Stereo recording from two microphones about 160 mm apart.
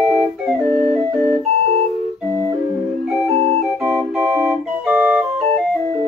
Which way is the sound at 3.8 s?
Centre (ahead or behind).